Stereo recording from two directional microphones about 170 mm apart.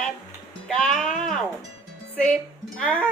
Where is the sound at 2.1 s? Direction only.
5° left (ahead or behind).